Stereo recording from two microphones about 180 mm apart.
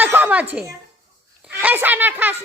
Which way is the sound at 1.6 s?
10° right (ahead or behind).